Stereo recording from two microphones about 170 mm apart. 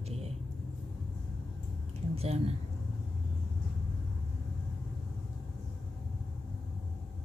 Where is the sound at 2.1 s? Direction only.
40° right (ahead or behind).